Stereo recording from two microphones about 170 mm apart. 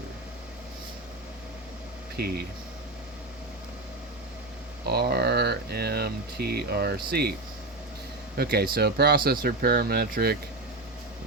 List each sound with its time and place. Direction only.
2.1 s speech: 70° right (ahead or behind)
4.9 s speech: 70° right (ahead or behind)
8.4 s speech: 65° right (ahead or behind)